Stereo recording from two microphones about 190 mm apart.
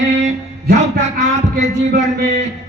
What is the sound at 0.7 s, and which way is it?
Speech, 40° right (ahead or behind).